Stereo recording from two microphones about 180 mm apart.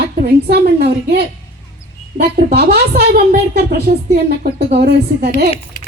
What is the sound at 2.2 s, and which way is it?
A woman's voice, 60° right (ahead or behind).